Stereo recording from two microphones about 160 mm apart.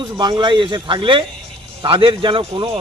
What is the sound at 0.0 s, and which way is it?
A man's voice, 25° right (ahead or behind).